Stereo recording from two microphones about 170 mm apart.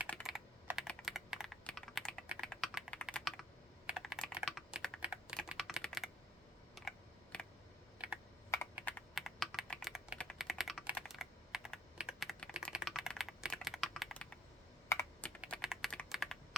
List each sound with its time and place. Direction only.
0.1 s typing: centre (ahead or behind)
2.2 s typing: 5° right (ahead or behind)
2.9 s computer keyboard: 5° left (ahead or behind)
7.3 s a sound: 5° left (ahead or behind)
7.9 s computer keyboard: 5° right (ahead or behind)
9.1 s typing: centre (ahead or behind)
14.8 s computer keyboard: 15° left (ahead or behind)
15.4 s typing: 5° left (ahead or behind)